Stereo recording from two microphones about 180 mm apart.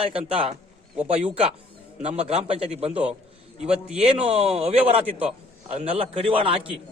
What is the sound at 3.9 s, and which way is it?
Speech, 35° right (ahead or behind).